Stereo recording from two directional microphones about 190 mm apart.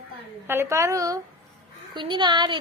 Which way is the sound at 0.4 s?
15° right (ahead or behind).